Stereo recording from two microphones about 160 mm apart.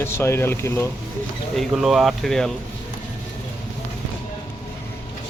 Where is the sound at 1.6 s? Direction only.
Centre (ahead or behind).